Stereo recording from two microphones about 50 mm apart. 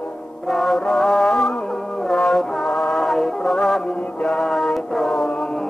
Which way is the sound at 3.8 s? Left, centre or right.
Left.